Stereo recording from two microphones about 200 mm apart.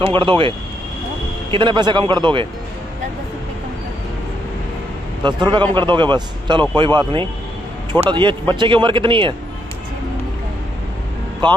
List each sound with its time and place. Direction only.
0.0 s speech: 25° right (ahead or behind)
5.2 s speech: 20° right (ahead or behind)
11.4 s speech: 25° right (ahead or behind)